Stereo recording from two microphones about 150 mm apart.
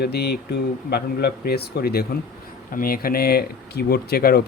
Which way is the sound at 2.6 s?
70° left (ahead or behind).